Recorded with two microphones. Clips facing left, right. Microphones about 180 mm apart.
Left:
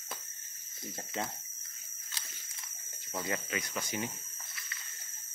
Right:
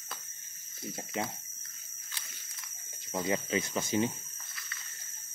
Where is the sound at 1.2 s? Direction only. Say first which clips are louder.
Right 2 dB; 15° right (ahead or behind).